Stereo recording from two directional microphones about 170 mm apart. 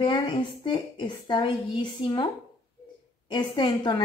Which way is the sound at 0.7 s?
25° left (ahead or behind).